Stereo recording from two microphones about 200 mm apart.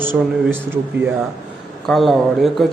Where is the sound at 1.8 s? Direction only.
Centre (ahead or behind).